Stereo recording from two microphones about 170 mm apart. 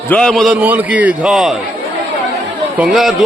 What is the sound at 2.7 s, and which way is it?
Speech, centre (ahead or behind).